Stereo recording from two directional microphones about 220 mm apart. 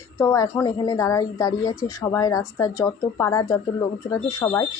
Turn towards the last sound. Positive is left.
turn(degrees=15)  # may be behind; listen again after turning